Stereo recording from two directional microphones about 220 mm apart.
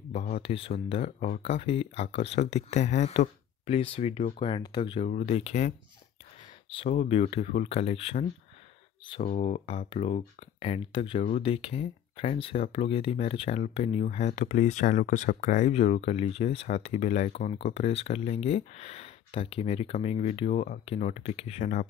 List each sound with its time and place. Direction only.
0.1 s speech: 30° left (ahead or behind)
6.7 s speech: 25° left (ahead or behind)